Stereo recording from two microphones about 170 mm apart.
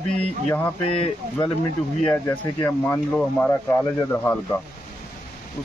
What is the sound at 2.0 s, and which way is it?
A man's voice, 10° left (ahead or behind).